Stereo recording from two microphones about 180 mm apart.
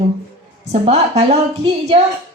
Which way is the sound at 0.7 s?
35° right (ahead or behind).